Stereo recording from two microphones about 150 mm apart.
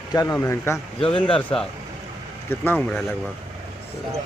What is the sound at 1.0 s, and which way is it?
Speech, 35° left (ahead or behind).